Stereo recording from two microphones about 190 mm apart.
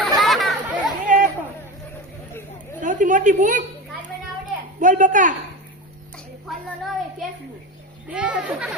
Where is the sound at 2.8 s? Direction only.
40° right (ahead or behind).